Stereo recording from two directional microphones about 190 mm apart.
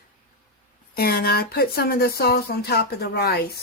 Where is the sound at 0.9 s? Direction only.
55° left (ahead or behind).